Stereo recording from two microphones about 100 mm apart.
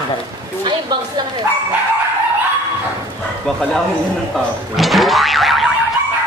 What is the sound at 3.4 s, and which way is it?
Boing, 5° left (ahead or behind).